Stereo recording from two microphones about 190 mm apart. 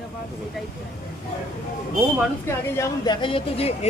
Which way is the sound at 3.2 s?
30° left (ahead or behind).